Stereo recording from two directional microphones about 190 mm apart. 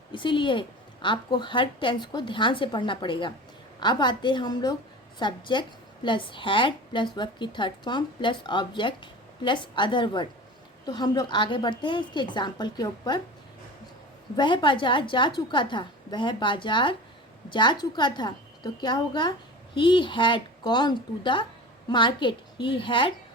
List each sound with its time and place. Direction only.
0.1 s a woman's voice: 25° left (ahead or behind)
14.3 s a woman's voice: 25° left (ahead or behind)